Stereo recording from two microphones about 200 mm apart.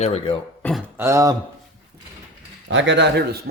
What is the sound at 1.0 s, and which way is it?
Speech, 15° right (ahead or behind).